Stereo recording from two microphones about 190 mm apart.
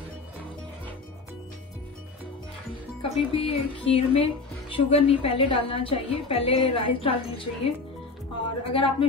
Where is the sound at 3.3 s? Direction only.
30° left (ahead or behind).